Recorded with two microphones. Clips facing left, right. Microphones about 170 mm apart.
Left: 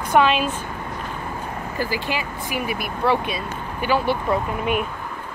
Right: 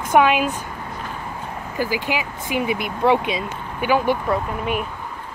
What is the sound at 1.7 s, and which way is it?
Speech, 15° right (ahead or behind).